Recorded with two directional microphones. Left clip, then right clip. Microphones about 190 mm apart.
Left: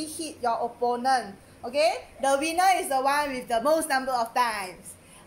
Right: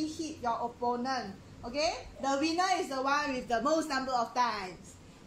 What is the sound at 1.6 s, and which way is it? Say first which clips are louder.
A woman's voice: left 8 dB; 35° left (ahead or behind).